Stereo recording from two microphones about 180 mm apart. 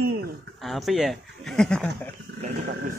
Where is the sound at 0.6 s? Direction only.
Centre (ahead or behind).